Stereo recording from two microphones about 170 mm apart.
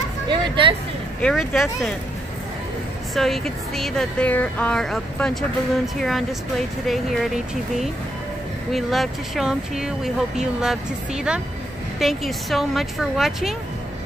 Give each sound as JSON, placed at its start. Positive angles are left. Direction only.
{"t": 0.3, "sound": "a sound", "side_deg": -30}
{"t": 1.2, "sound": "speech", "side_deg": 0}
{"t": 3.2, "sound": "speech", "side_deg": 0}
{"t": 8.7, "sound": "speech", "side_deg": 0}
{"t": 12.0, "sound": "speech", "side_deg": 0}